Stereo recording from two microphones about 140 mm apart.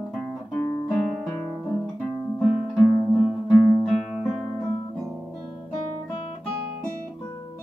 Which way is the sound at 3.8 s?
Centre (ahead or behind).